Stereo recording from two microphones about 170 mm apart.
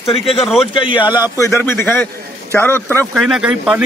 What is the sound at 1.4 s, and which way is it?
A man's voice, 15° left (ahead or behind).